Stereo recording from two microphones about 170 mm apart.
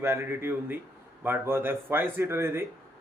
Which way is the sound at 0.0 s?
15° right (ahead or behind).